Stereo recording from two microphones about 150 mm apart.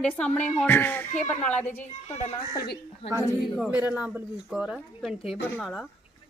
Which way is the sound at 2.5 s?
90° left.